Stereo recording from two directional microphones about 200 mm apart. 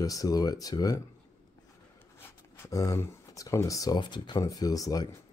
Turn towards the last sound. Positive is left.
turn(degrees=20)  # may be behind; listen again after turning